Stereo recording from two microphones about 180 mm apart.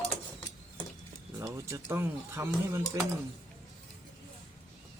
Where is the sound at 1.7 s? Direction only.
15° right (ahead or behind).